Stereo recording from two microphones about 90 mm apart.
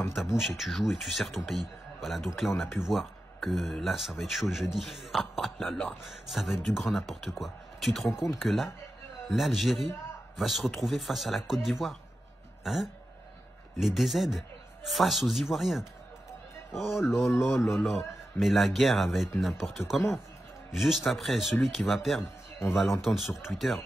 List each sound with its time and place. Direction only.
0.1 s speech: 5° right (ahead or behind)
17.3 s speech: 25° left (ahead or behind)
17.7 s speech: centre (ahead or behind)
20.7 s speech: centre (ahead or behind)